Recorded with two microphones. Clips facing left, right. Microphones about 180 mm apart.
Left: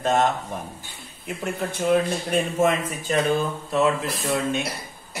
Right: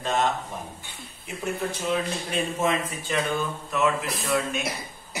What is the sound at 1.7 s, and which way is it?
Speech, 50° left (ahead or behind).